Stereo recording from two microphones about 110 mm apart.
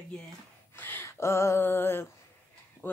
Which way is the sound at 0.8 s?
20° left (ahead or behind).